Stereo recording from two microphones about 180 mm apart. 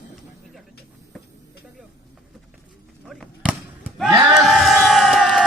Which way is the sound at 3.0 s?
5° left (ahead or behind).